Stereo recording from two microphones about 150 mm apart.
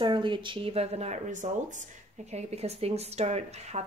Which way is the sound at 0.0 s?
35° right (ahead or behind).